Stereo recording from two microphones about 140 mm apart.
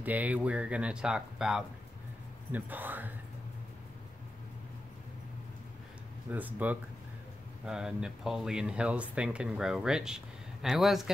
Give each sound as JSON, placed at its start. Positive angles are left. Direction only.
{"t": 0.0, "sound": "speech", "side_deg": -10}
{"t": 6.3, "sound": "speech", "side_deg": -10}